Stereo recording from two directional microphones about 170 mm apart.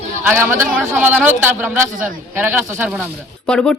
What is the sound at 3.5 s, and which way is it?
Speech, 5° left (ahead or behind).